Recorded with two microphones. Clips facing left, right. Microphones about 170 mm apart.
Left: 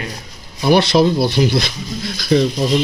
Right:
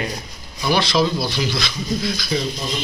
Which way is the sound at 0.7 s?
55° left (ahead or behind).